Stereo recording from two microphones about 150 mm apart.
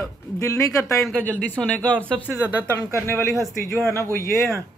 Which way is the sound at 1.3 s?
5° left (ahead or behind).